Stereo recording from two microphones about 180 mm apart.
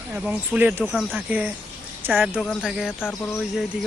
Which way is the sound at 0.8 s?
5° left (ahead or behind).